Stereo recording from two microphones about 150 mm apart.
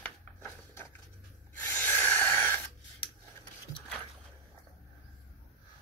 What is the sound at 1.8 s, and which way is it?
Snort, 15° left (ahead or behind).